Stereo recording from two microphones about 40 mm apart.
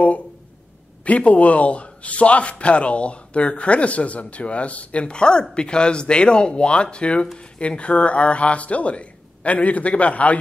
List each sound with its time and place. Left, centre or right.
1.0 s a man's voice: left
5.1 s a man's voice: left